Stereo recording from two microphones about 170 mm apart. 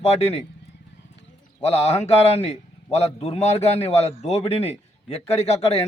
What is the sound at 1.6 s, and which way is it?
A man's voice, 40° left (ahead or behind).